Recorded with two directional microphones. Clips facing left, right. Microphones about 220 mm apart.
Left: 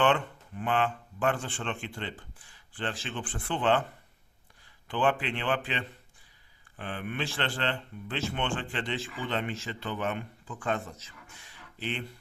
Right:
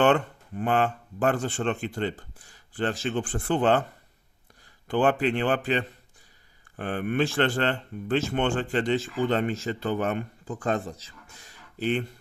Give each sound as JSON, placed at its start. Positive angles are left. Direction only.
{"t": 0.0, "sound": "speech", "side_deg": -45}
{"t": 4.9, "sound": "speech", "side_deg": -45}